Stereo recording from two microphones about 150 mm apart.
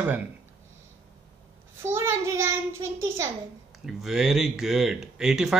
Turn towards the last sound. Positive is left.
turn(degrees=-5)  # may be behind; listen again after turning